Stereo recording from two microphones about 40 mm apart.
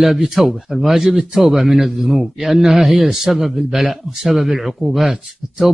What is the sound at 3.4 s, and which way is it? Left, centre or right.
A man's voice, centre.